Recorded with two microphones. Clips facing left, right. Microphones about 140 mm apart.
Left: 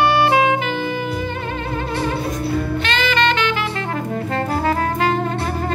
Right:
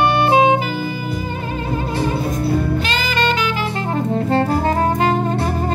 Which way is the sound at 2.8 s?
40° right (ahead or behind).